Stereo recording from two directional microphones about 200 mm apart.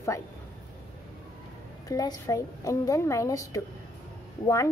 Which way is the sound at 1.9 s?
15° left (ahead or behind).